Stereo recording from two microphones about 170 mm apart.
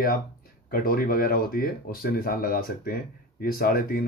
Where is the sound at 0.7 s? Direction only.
60° left (ahead or behind).